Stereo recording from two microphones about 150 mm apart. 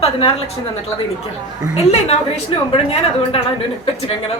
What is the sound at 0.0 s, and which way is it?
Speech, 40° left (ahead or behind).